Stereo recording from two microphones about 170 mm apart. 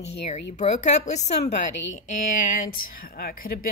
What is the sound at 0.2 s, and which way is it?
Speech, 40° left (ahead or behind).